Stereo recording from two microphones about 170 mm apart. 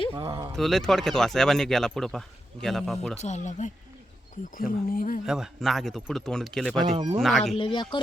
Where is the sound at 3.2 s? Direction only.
45° left (ahead or behind).